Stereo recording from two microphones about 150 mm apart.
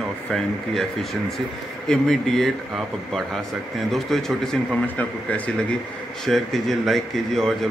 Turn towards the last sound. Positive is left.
turn(degrees=0)  # may be behind; listen again after turning